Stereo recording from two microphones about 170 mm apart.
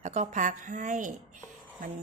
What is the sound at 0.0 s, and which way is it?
Speech, 45° right (ahead or behind).